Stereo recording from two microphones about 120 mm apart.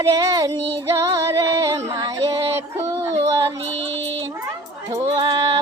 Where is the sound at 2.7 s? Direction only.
25° right (ahead or behind).